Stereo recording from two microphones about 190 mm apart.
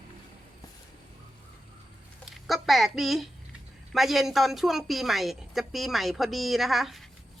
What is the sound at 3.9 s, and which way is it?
A woman's voice, centre (ahead or behind).